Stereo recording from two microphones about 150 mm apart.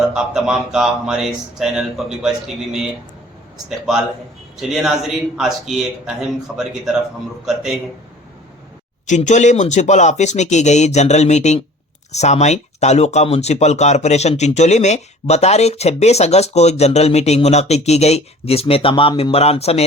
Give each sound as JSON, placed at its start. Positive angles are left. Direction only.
{"t": 0.0, "sound": "speech", "side_deg": -5}
{"t": 4.6, "sound": "speech", "side_deg": 0}
{"t": 9.0, "sound": "speech", "side_deg": 55}